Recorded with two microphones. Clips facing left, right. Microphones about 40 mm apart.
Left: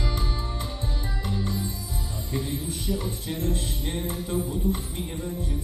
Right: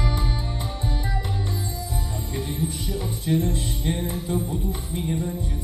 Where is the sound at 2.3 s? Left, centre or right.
Right.